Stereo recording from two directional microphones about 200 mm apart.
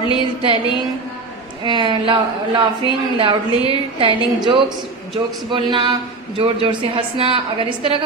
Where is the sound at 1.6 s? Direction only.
25° right (ahead or behind).